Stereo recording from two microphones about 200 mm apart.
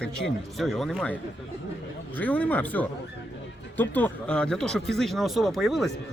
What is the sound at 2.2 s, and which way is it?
Speech, 5° left (ahead or behind).